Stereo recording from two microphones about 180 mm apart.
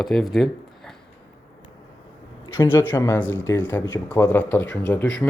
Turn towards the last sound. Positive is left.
turn(degrees=10)  # may be behind; listen again after turning